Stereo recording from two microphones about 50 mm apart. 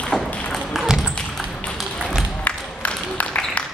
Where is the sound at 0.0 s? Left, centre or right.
Centre.